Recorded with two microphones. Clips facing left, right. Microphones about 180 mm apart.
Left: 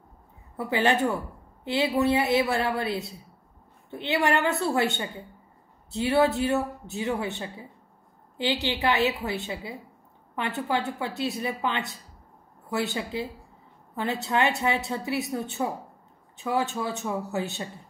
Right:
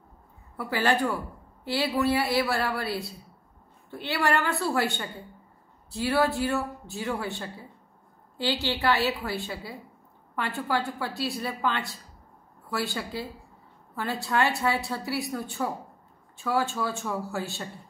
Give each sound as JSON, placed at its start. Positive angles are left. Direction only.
{"t": 0.6, "sound": "a woman's voice", "side_deg": 20}